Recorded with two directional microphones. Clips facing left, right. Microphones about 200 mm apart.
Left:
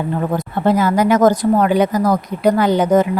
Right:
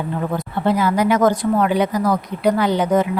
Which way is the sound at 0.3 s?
45° left (ahead or behind).